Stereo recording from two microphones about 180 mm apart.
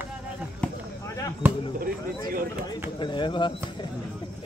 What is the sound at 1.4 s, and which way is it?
Speech, 10° right (ahead or behind).